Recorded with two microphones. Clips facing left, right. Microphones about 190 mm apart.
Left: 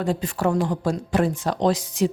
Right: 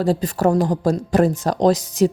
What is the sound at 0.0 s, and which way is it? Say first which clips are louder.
Speech: right 5 dB; 35° right (ahead or behind).